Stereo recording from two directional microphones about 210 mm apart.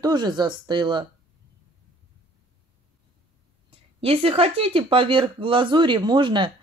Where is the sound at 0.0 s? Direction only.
20° right (ahead or behind).